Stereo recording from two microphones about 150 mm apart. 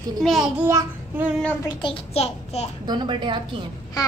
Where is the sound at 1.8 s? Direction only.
40° left (ahead or behind).